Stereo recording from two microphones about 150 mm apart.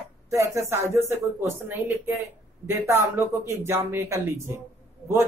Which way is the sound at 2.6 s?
15° right (ahead or behind).